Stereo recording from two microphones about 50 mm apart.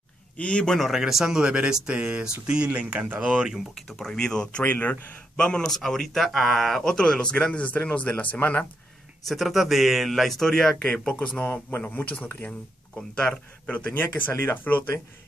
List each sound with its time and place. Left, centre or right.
0.4 s speech: left
0.7 s speech: centre
0.9 s speech: centre
3.7 s speech: centre
4.6 s speech: left
5.3 s speech: centre
9.3 s speech: centre
10.9 s speech: left
12.4 s speech: centre
13.7 s speech: left